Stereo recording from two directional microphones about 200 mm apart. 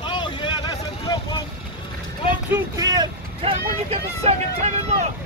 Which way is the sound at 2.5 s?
15° right (ahead or behind).